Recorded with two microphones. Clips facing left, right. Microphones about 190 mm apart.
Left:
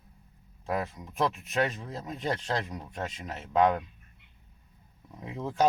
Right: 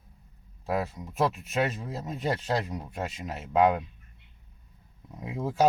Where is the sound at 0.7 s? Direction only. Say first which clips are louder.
Right 2 dB; 5° right (ahead or behind).